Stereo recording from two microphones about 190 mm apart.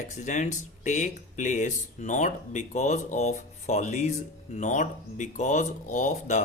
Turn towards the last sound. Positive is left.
turn(degrees=40)  # may be behind; listen again after turning